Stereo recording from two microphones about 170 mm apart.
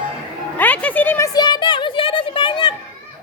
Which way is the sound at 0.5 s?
10° left (ahead or behind).